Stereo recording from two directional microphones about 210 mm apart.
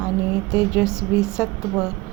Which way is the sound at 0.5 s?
5° right (ahead or behind).